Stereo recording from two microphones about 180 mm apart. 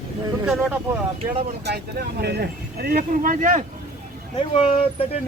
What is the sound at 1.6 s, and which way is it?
Speech, 65° right (ahead or behind).